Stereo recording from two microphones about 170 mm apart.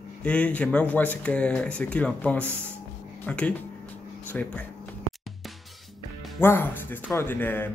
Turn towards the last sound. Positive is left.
turn(degrees=10)  # may be behind; listen again after turning